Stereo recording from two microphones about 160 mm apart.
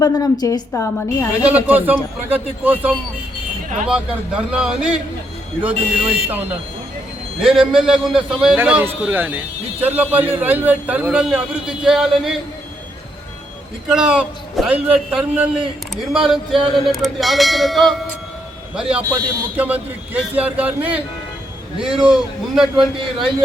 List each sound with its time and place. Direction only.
0.0 s a woman's voice: 20° left (ahead or behind)
1.4 s a man's voice: 10° right (ahead or behind)
13.8 s a man's voice: 5° right (ahead or behind)